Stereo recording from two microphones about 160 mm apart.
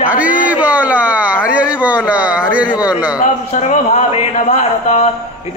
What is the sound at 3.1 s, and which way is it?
A man's voice, 50° left (ahead or behind).